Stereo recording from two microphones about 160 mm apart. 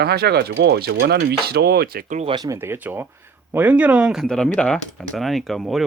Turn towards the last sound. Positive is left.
turn(degrees=0)  # may be behind; listen again after turning